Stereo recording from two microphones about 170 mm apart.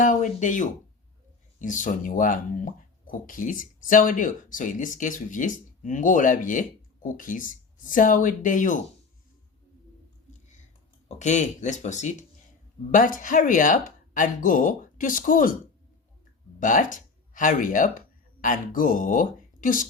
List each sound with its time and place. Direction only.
0.0 s speech: 50° left (ahead or behind)
11.2 s speech: 45° left (ahead or behind)
16.6 s speech: 50° left (ahead or behind)